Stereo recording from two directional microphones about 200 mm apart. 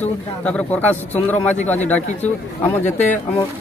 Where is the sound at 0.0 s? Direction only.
5° left (ahead or behind).